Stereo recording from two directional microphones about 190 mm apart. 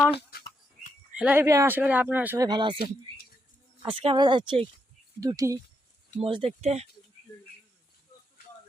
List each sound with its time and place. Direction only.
1.1 s speech: 5° right (ahead or behind); by 2.7 s 25° right (ahead or behind)
3.8 s speech: 25° right (ahead or behind)
6.1 s speech: 30° right (ahead or behind)